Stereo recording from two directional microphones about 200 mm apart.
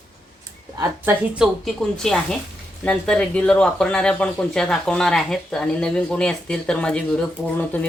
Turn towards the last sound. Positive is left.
turn(degrees=10)  # may be behind; listen again after turning